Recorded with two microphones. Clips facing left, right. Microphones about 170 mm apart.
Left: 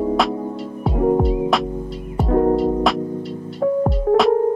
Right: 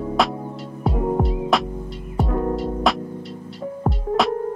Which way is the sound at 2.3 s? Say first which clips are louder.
Left 9 dB; 45° left (ahead or behind).